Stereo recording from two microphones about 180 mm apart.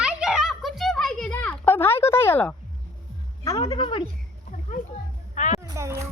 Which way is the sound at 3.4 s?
20° left (ahead or behind).